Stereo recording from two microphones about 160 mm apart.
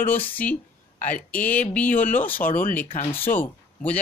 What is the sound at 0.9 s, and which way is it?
Speech, 50° left (ahead or behind).